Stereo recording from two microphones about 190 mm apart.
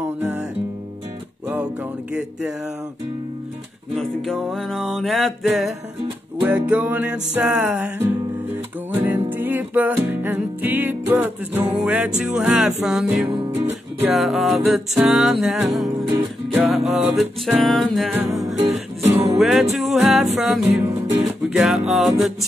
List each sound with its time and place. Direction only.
0.0 s music: 10° right (ahead or behind)
3.9 s music: centre (ahead or behind)
16.1 s music: 20° right (ahead or behind)
16.6 s music: centre (ahead or behind)
18.1 s music: 15° right (ahead or behind)
18.6 s music: 35° right (ahead or behind)
19.1 s music: centre (ahead or behind)